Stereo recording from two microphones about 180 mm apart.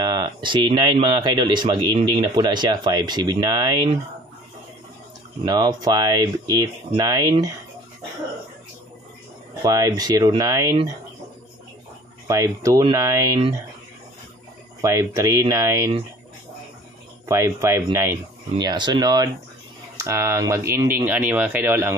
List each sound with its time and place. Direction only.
0.0 s speech: 25° right (ahead or behind)
5.5 s speech: 20° right (ahead or behind)
9.6 s speech: 20° right (ahead or behind)
12.3 s speech: 20° right (ahead or behind)
14.8 s speech: 15° right (ahead or behind)
17.3 s speech: 15° right (ahead or behind)
18.7 s speech: 25° right (ahead or behind)